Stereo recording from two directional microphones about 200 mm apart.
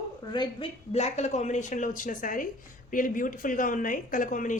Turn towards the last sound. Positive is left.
turn(degrees=40)  # may be behind; listen again after turning